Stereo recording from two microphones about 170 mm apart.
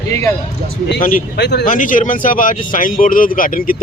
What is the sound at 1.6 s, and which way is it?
Speech, 50° left (ahead or behind).